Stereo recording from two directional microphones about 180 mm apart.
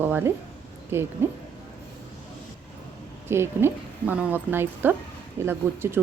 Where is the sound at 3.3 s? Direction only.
15° right (ahead or behind).